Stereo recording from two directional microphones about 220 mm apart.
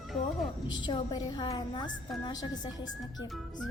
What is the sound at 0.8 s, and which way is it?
A woman's voice, 20° left (ahead or behind).